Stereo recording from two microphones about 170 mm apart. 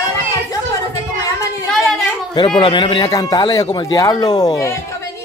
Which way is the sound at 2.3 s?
30° left (ahead or behind).